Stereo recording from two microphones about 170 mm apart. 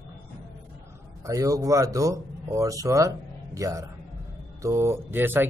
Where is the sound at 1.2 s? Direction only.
20° right (ahead or behind).